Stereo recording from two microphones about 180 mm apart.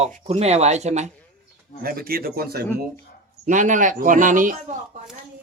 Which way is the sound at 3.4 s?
45° right (ahead or behind).